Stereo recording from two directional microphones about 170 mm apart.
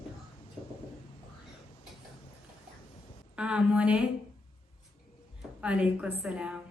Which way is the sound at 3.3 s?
5° right (ahead or behind).